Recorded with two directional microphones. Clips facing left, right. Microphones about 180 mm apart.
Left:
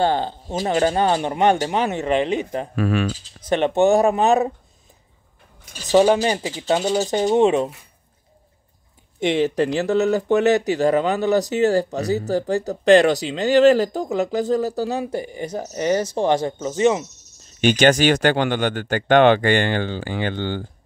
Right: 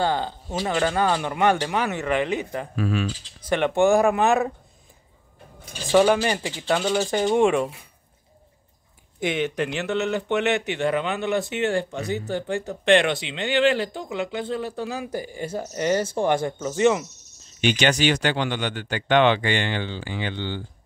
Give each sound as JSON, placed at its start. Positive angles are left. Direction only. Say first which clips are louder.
{"t": 0.0, "sound": "speech", "louder": "left 4 dB", "side_deg": 20}
{"t": 2.7, "sound": "mechanisms", "louder": "left 4 dB", "side_deg": 65}
{"t": 3.4, "sound": "speech", "louder": "left 3 dB", "side_deg": 25}
{"t": 5.9, "sound": "speech", "louder": "left 3 dB", "side_deg": 35}
{"t": 6.9, "sound": "speech", "louder": "left 2 dB", "side_deg": 20}
{"t": 9.2, "sound": "speech", "louder": "left 6 dB", "side_deg": 30}
{"t": 17.6, "sound": "speech", "louder": "left 6 dB", "side_deg": 45}